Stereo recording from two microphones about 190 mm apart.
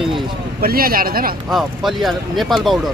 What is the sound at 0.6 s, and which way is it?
Speech, 50° right (ahead or behind).